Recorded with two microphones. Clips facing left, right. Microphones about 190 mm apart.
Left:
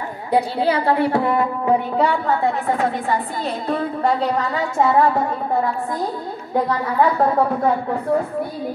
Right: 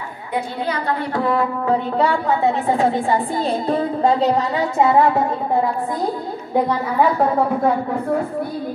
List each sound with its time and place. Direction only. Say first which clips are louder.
0.3 s a woman's voice: left 5 dB; 30° left (ahead or behind)
2.0 s a woman's voice: even; centre (ahead or behind)
2.4 s a woman's voice: right 3 dB; 25° right (ahead or behind)